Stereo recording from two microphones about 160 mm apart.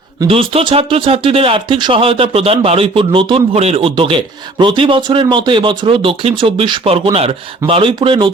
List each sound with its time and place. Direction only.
0.3 s speech: 35° right (ahead or behind)